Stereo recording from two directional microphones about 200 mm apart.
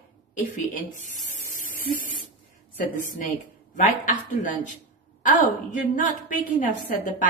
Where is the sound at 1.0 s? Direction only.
40° left (ahead or behind).